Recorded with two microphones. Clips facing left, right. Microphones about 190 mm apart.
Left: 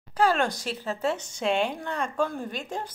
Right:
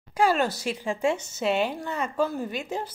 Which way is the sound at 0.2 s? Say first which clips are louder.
Right 1 dB; 5° right (ahead or behind).